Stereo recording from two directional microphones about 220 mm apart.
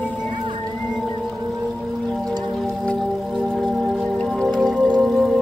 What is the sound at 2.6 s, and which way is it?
Music, 5° left (ahead or behind).